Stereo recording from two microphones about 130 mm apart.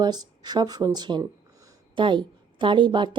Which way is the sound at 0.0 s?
35° right (ahead or behind).